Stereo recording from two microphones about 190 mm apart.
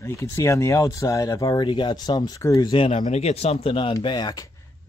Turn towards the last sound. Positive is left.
turn(degrees=20)  # may be behind; listen again after turning